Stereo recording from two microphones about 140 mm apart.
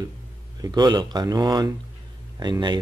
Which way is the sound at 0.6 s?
30° right (ahead or behind).